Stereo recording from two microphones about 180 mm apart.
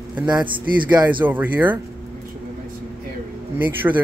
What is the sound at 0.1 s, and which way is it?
Speech, 5° right (ahead or behind).